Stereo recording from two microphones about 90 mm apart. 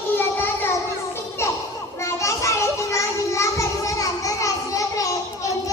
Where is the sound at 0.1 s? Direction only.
25° left (ahead or behind).